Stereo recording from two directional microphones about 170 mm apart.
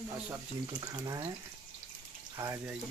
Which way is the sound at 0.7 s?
25° right (ahead or behind).